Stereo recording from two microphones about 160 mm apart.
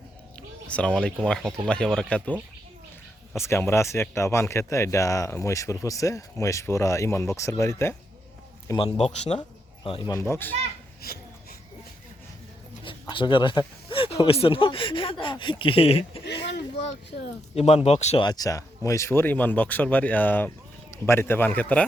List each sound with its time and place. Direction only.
0.3 s a sound: 5° left (ahead or behind)
1.2 s speech: 5° left (ahead or behind)
3.3 s a man's voice: 15° left (ahead or behind)
9.0 s speech: 40° left (ahead or behind)
10.1 s speech: 15° left (ahead or behind)
11.0 s speech: 70° left (ahead or behind)
12.8 s speech: 30° left (ahead or behind)
17.5 s speech: 40° left (ahead or behind)
18.2 s speech: 25° left (ahead or behind)